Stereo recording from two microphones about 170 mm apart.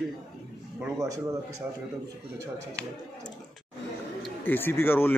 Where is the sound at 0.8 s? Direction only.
20° right (ahead or behind).